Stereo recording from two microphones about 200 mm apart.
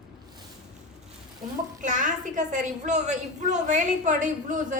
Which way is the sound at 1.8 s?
40° right (ahead or behind).